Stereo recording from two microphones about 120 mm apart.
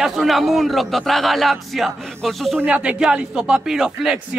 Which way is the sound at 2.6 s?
10° right (ahead or behind).